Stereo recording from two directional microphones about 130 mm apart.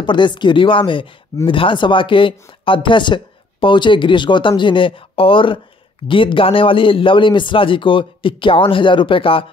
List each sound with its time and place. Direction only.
0.0 s a man's voice: 35° left (ahead or behind)